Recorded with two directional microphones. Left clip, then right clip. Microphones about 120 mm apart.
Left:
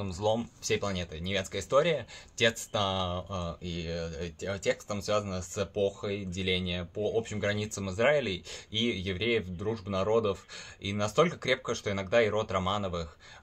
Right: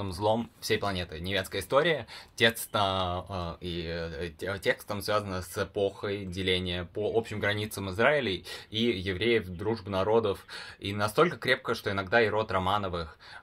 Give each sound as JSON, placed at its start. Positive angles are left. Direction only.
{"t": 0.0, "sound": "speech", "side_deg": 15}